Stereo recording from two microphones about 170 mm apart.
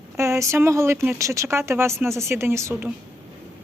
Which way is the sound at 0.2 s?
15° right (ahead or behind).